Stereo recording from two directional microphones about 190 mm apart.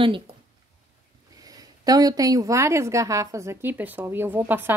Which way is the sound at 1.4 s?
20° right (ahead or behind).